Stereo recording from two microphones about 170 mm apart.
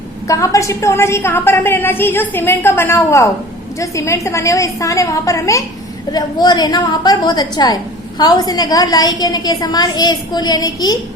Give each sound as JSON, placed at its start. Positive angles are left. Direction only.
{"t": 0.3, "sound": "a woman's voice", "side_deg": 20}